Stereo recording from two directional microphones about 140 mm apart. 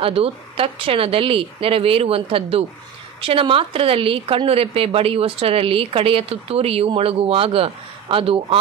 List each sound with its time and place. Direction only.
0.0 s a woman's voice: 45° right (ahead or behind)